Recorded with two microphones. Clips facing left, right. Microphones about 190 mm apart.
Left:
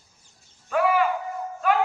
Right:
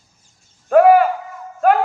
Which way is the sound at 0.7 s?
50° right (ahead or behind).